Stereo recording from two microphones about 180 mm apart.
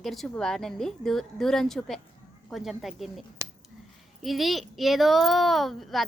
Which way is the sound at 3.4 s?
20° right (ahead or behind).